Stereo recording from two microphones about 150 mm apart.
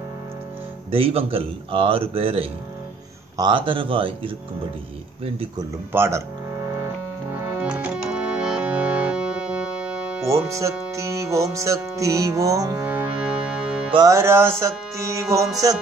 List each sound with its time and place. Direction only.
0.9 s a man's voice: 40° right (ahead or behind)
5.6 s speech: 20° right (ahead or behind)
6.8 s music: 15° right (ahead or behind)
10.2 s speech: 20° right (ahead or behind)
12.8 s music: 10° right (ahead or behind)
14.0 s speech: 15° right (ahead or behind)